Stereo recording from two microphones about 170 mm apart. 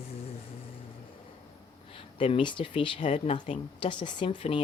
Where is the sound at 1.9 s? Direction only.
30° left (ahead or behind).